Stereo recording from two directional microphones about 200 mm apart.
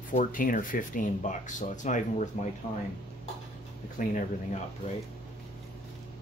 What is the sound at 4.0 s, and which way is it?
Speech, 40° left (ahead or behind).